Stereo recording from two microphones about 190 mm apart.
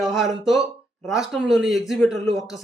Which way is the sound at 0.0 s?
Centre (ahead or behind).